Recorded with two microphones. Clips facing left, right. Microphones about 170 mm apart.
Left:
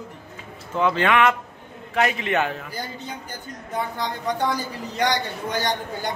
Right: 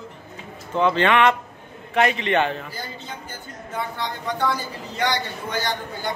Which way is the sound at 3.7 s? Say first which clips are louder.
Left 1 dB; 15° left (ahead or behind).